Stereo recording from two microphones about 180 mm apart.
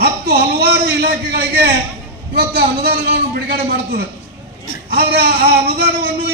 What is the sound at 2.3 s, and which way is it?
A man's voice, 60° right (ahead or behind).